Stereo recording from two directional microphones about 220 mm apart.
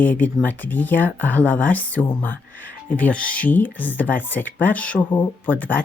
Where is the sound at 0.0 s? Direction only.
5° left (ahead or behind).